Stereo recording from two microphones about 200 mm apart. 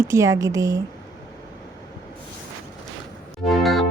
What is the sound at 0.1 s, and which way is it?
Speech, 15° right (ahead or behind).